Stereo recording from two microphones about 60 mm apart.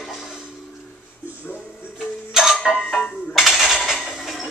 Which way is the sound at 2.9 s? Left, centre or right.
Centre.